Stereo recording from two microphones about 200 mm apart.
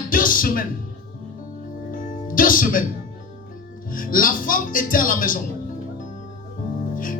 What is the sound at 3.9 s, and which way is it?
Speech, 45° left (ahead or behind).